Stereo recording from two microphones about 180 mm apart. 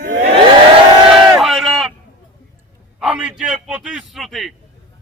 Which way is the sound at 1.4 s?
Centre (ahead or behind).